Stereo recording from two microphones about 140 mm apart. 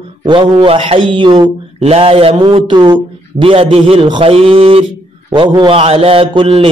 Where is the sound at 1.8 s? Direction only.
45° right (ahead or behind).